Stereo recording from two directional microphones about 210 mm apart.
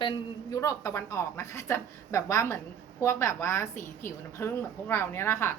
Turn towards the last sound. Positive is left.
turn(degrees=10)  # may be behind; listen again after turning